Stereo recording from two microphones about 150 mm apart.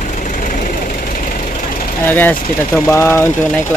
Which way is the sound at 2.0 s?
10° left (ahead or behind).